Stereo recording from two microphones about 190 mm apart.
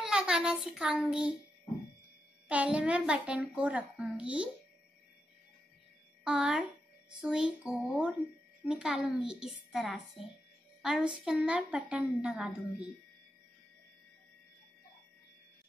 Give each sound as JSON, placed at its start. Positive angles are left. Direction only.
{"t": 0.0, "sound": "a child's voice", "side_deg": -5}
{"t": 2.4, "sound": "a woman's voice", "side_deg": -5}
{"t": 6.2, "sound": "a woman's voice", "side_deg": -5}